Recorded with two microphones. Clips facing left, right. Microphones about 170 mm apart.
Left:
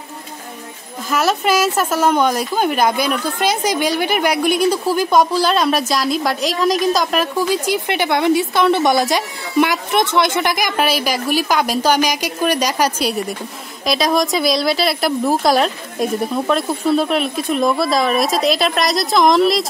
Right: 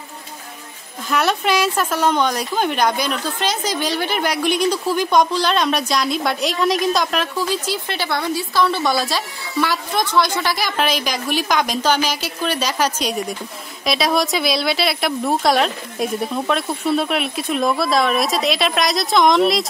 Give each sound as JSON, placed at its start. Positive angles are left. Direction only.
{"t": 1.1, "sound": "a woman's voice", "side_deg": 0}
{"t": 7.3, "sound": "a woman's voice", "side_deg": 15}
{"t": 13.8, "sound": "a woman's voice", "side_deg": 0}